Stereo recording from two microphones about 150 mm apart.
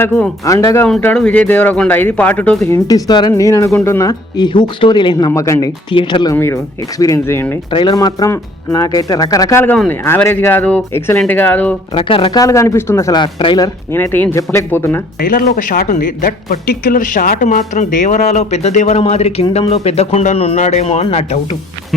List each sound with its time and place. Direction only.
0.0 s speech: 15° left (ahead or behind)
1.0 s speech: 10° left (ahead or behind)
2.6 s speech: 20° left (ahead or behind)
5.3 s speech: 20° left (ahead or behind)
5.9 s speech: 35° left (ahead or behind)
6.3 s speech: 15° left (ahead or behind)
7.7 s speech: 30° left (ahead or behind)
9.7 s a man's voice: 5° left (ahead or behind)
10.0 s speech: 15° left (ahead or behind)
11.9 s speech: 35° left (ahead or behind)
12.4 s speech: 20° left (ahead or behind)
13.9 s speech: 15° left (ahead or behind)
15.2 s speech: 75° left (ahead or behind); by 21.3 s 45° left (ahead or behind)